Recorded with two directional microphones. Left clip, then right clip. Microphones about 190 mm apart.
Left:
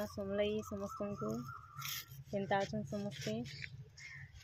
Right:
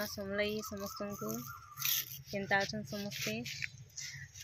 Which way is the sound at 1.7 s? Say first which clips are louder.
Right 9 dB; 30° left (ahead or behind).